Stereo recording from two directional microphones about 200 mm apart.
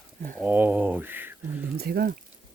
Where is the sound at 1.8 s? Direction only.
50° right (ahead or behind).